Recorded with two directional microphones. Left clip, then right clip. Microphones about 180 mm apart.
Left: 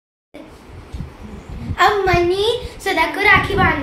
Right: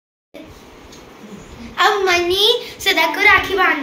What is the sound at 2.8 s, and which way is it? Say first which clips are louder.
Speech: right 2 dB; 25° left (ahead or behind).